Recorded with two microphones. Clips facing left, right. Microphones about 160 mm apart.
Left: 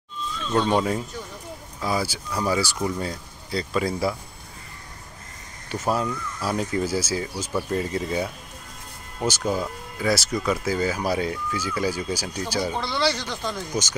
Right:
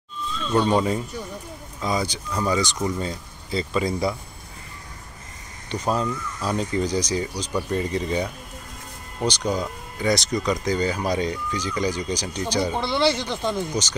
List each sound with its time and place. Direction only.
0.7 s speech: centre (ahead or behind)
5.7 s speech: 10° left (ahead or behind)
12.7 s speech: 20° right (ahead or behind)